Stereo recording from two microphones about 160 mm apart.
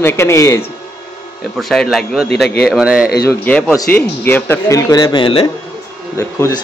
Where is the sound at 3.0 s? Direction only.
80° left.